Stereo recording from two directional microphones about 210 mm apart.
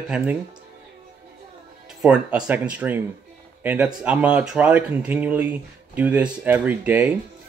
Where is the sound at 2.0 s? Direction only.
5° right (ahead or behind).